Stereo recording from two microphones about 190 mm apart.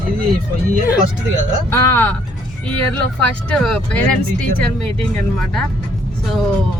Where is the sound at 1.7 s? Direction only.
15° left (ahead or behind).